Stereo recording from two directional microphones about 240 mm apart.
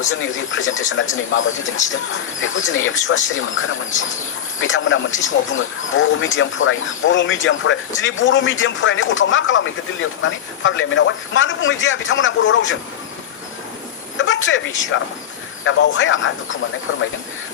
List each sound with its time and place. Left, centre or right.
0.2 s speech: left
14.2 s a sound: left
14.8 s speech: left